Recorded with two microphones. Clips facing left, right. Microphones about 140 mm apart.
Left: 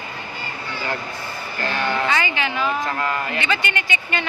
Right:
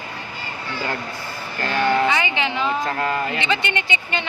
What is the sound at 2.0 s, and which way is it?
Speech, 15° right (ahead or behind).